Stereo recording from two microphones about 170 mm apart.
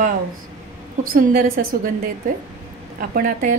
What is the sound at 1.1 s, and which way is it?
Speech, 60° right (ahead or behind).